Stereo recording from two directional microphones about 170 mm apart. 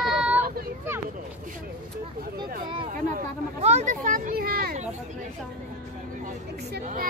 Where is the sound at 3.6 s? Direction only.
45° right (ahead or behind); by 4.7 s 65° right (ahead or behind).